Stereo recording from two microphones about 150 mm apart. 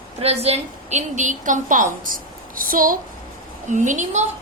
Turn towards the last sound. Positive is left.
turn(degrees=-55)  # may be behind; listen again after turning